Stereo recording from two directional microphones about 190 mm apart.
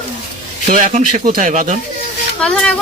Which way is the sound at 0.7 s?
40° right (ahead or behind).